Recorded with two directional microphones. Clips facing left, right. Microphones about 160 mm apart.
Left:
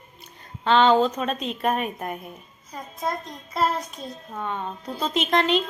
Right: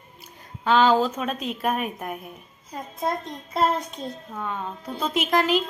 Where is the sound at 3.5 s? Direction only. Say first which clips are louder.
Right 1 dB; 25° right (ahead or behind).